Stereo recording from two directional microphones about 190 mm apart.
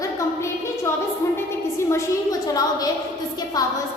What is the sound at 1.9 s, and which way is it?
A woman's voice, 15° left (ahead or behind).